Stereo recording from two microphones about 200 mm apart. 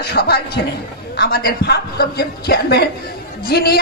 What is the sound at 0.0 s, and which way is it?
A man's voice, 55° left (ahead or behind).